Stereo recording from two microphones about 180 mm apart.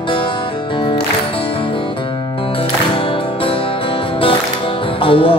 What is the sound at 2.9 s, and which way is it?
Music, 30° left (ahead or behind).